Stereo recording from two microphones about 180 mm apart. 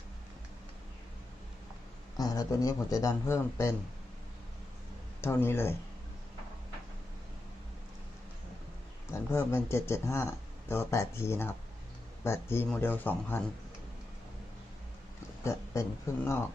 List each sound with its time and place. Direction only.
2.1 s speech: 20° left (ahead or behind)
5.2 s speech: 10° left (ahead or behind)
9.1 s speech: 15° left (ahead or behind)
15.4 s speech: 15° left (ahead or behind)